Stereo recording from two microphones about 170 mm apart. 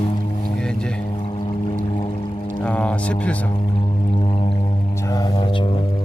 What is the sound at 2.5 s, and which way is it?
Speech, 5° left (ahead or behind).